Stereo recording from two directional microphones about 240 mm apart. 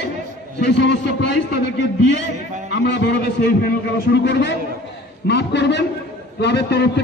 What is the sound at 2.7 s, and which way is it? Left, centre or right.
A man's voice, left.